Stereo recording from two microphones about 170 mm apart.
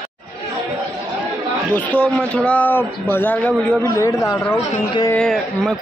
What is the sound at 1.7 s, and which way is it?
A man's voice, 10° left (ahead or behind).